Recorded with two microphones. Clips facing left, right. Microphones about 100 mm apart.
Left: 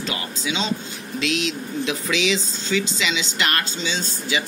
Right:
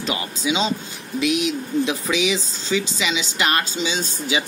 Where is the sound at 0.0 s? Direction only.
15° right (ahead or behind).